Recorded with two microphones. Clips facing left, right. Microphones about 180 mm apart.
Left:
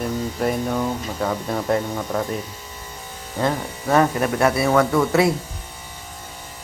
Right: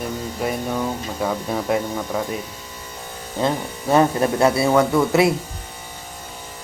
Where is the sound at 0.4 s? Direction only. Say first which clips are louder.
Left 1 dB; centre (ahead or behind).